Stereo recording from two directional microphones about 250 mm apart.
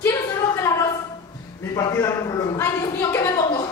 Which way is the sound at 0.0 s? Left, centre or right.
Centre.